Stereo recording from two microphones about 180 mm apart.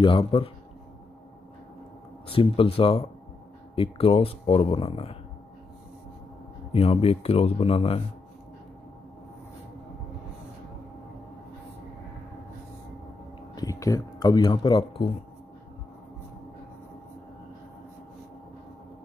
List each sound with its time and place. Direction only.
0.0 s speech: 30° left (ahead or behind)
2.2 s speech: 30° left (ahead or behind)
6.7 s speech: 35° left (ahead or behind)
13.6 s speech: 20° left (ahead or behind)